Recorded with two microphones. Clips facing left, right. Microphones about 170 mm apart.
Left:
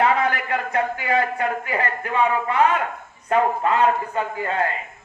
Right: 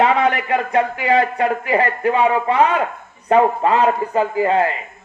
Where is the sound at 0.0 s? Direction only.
20° right (ahead or behind).